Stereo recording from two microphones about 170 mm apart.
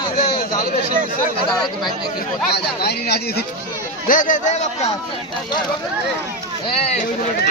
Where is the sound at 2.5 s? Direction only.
70° left (ahead or behind).